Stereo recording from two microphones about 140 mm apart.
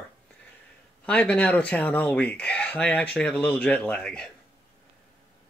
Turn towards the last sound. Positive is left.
turn(degrees=5)  # may be behind; listen again after turning